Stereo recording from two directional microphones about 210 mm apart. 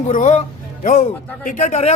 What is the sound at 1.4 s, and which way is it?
Speech, 35° left (ahead or behind).